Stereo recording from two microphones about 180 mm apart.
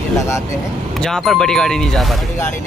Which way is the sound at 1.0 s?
Centre (ahead or behind).